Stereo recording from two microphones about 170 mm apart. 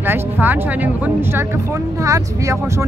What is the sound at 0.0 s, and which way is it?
Speech, 10° right (ahead or behind).